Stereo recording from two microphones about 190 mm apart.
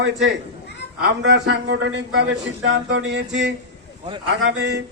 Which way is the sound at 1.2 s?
70° right (ahead or behind).